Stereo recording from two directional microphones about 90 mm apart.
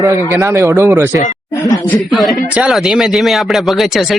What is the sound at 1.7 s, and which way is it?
Speech, centre (ahead or behind).